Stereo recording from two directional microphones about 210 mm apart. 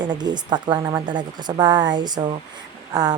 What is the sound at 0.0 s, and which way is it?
Speech, 20° right (ahead or behind).